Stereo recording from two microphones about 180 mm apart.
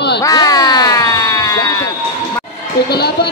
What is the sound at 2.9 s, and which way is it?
Speech, 65° left (ahead or behind).